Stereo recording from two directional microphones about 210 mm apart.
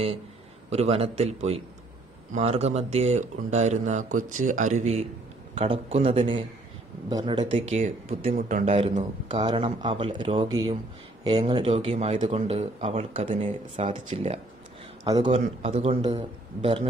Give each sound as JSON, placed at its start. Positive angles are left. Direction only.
{"t": 0.7, "sound": "speech", "side_deg": -30}
{"t": 7.7, "sound": "speech", "side_deg": -30}